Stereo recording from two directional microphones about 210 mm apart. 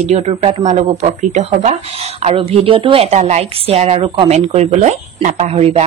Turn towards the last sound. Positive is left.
turn(degrees=-30)  # may be behind; listen again after turning